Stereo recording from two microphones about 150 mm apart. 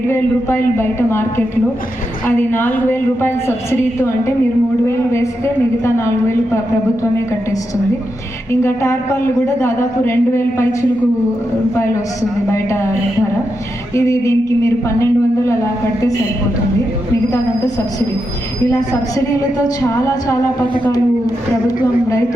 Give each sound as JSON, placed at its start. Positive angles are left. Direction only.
{"t": 0.1, "sound": "a man's voice", "side_deg": 15}
{"t": 8.6, "sound": "a man's voice", "side_deg": 15}
{"t": 12.5, "sound": "a woman's voice", "side_deg": 20}
{"t": 13.9, "sound": "a woman's voice", "side_deg": 20}
{"t": 17.3, "sound": "a woman's voice", "side_deg": 20}